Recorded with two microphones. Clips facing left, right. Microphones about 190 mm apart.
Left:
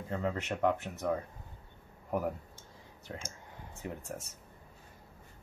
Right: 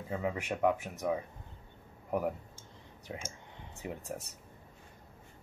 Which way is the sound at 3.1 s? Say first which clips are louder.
Right 1 dB; 10° right (ahead or behind).